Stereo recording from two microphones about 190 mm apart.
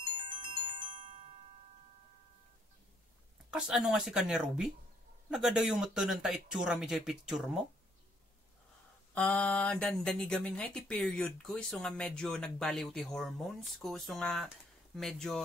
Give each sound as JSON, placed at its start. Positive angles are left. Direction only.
{"t": 0.1, "sound": "ringtone", "side_deg": -25}
{"t": 0.9, "sound": "chime", "side_deg": -25}
{"t": 3.4, "sound": "speech", "side_deg": -5}
{"t": 9.1, "sound": "speech", "side_deg": 5}